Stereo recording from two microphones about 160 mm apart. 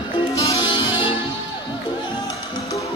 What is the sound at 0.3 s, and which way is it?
Music, 20° left (ahead or behind).